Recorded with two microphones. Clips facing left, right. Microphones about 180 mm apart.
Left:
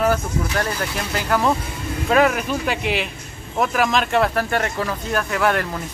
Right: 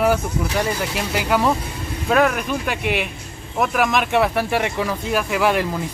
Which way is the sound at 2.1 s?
Centre (ahead or behind).